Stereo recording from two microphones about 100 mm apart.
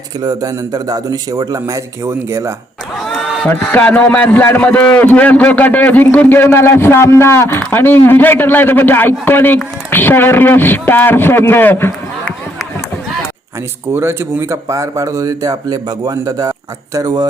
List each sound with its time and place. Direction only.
0.2 s speech: 40° right (ahead or behind)
2.9 s a sound: centre (ahead or behind)
3.7 s a man's voice: 15° left (ahead or behind)
13.9 s speech: 25° right (ahead or behind); by 17.2 s 40° right (ahead or behind)